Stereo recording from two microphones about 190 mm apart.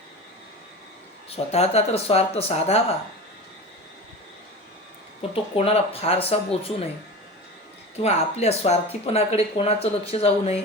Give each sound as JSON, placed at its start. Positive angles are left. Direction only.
{"t": 1.3, "sound": "speech", "side_deg": 35}
{"t": 5.3, "sound": "speech", "side_deg": 30}
{"t": 7.9, "sound": "speech", "side_deg": 35}